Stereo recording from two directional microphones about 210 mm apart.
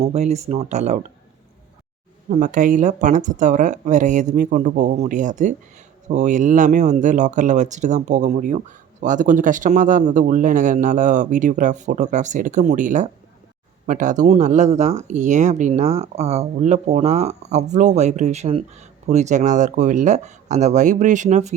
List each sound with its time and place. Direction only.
0.1 s speech: 30° right (ahead or behind)
2.3 s speech: 40° right (ahead or behind)